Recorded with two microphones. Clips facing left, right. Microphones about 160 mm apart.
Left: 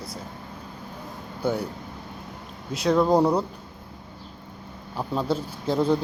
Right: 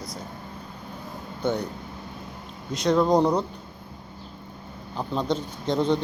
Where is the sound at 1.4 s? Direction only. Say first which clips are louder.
Even; 10° left (ahead or behind).